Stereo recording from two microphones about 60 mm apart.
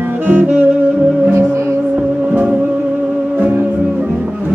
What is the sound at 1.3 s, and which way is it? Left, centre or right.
Music, right.